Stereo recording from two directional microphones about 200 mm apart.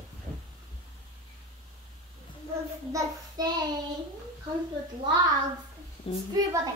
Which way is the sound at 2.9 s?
20° right (ahead or behind).